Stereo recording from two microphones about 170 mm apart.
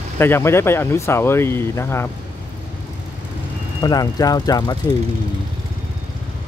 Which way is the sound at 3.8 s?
25° left (ahead or behind).